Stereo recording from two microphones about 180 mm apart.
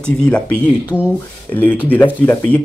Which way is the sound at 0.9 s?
10° right (ahead or behind).